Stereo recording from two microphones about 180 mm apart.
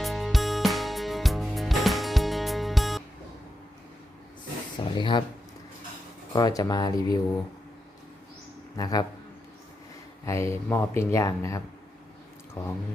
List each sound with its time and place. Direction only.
0.0 s music: centre (ahead or behind)
4.9 s speech: 25° left (ahead or behind)
6.3 s speech: 20° left (ahead or behind)
8.8 s speech: 20° left (ahead or behind)
10.2 s speech: 15° left (ahead or behind)